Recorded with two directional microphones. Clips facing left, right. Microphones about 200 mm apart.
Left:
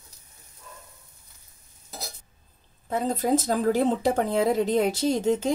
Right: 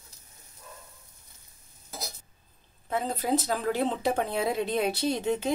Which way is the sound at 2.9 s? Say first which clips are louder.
Left 4 dB; 45° left (ahead or behind).